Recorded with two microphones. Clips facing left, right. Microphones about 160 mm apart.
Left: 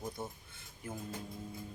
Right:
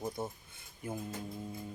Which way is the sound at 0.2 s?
10° right (ahead or behind).